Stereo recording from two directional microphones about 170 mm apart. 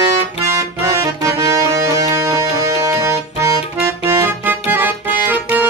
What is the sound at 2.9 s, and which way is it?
Music, 20° right (ahead or behind).